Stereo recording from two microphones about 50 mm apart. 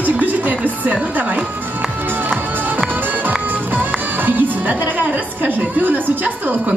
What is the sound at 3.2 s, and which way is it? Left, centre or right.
Music, right.